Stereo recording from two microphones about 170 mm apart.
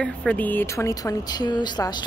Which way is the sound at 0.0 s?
5° left (ahead or behind).